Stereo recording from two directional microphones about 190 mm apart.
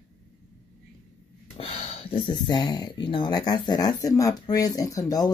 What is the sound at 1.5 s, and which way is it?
Speech, 30° left (ahead or behind).